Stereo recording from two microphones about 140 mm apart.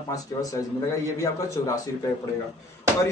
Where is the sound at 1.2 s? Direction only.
25° left (ahead or behind).